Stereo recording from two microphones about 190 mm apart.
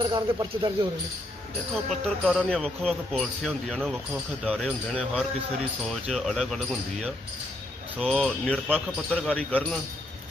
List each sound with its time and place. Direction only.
0.0 s speech: 20° right (ahead or behind)
1.9 s speech: centre (ahead or behind)
7.9 s speech: centre (ahead or behind)